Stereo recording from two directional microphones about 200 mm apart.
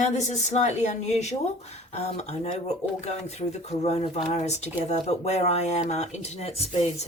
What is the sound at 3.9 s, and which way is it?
Speech, 30° left (ahead or behind).